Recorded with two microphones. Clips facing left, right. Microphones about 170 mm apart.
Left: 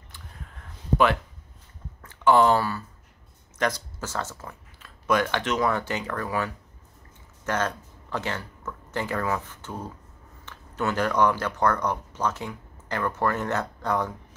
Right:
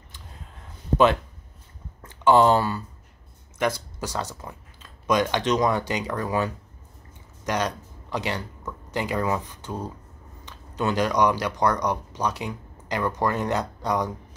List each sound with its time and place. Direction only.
2.0 s speech: 20° right (ahead or behind)
3.5 s speech: 10° right (ahead or behind)